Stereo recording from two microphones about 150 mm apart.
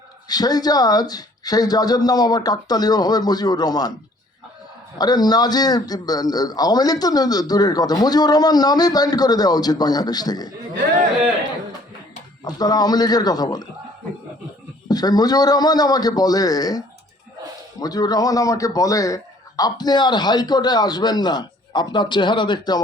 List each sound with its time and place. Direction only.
0.3 s a man's voice: 25° left (ahead or behind)
4.9 s a man's voice: 25° left (ahead or behind)
12.5 s a man's voice: 25° left (ahead or behind)
14.8 s a man's voice: 25° left (ahead or behind)